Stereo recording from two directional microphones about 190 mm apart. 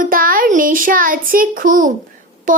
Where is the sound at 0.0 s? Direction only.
45° right (ahead or behind).